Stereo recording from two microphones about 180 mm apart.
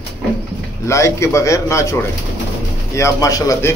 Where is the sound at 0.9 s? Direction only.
15° left (ahead or behind).